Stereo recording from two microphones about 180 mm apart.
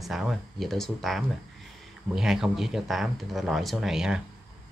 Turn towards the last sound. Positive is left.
turn(degrees=-5)  # may be behind; listen again after turning